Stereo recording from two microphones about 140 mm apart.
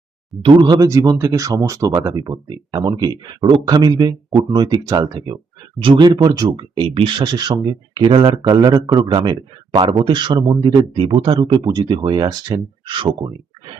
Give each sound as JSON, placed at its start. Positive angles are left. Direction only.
{"t": 0.4, "sound": "speech", "side_deg": -35}
{"t": 5.8, "sound": "speech", "side_deg": -35}